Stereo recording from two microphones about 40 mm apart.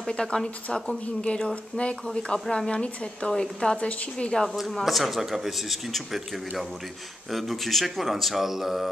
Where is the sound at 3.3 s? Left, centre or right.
Centre.